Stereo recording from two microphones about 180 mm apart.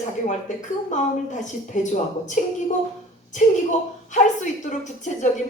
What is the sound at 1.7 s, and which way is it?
Speech, 45° left (ahead or behind).